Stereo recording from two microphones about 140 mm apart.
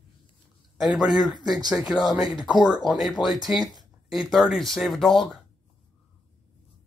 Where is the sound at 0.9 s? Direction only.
Centre (ahead or behind).